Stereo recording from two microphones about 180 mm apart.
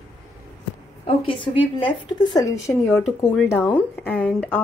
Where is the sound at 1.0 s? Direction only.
30° left (ahead or behind).